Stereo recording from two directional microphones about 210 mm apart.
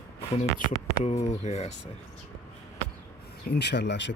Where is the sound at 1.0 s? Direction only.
30° left (ahead or behind).